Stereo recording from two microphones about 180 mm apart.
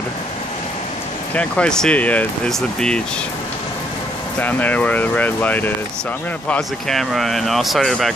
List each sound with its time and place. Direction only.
1.3 s speech: 5° left (ahead or behind)
4.4 s speech: 10° left (ahead or behind)